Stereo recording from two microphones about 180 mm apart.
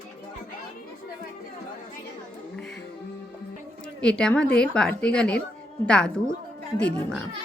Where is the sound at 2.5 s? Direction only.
5° left (ahead or behind).